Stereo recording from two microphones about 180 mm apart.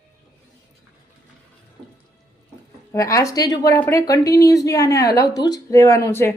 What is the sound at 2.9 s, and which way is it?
Speech, 15° left (ahead or behind).